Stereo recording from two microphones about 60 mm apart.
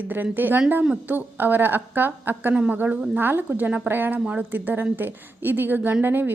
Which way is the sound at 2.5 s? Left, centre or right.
Right.